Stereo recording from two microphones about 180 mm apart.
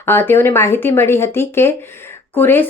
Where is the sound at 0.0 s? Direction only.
10° left (ahead or behind).